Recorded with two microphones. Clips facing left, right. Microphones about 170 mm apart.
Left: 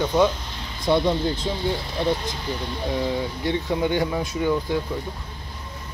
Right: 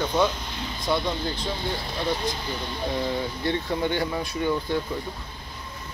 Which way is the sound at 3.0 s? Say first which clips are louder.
Left 2 dB; 10° left (ahead or behind).